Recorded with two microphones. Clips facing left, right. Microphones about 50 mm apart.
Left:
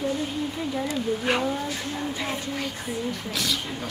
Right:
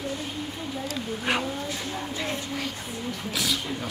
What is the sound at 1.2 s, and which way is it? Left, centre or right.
Speech, centre.